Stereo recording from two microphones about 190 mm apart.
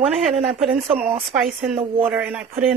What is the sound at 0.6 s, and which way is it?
Speech, 30° right (ahead or behind).